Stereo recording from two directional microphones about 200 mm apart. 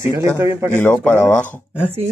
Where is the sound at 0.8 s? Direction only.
10° left (ahead or behind).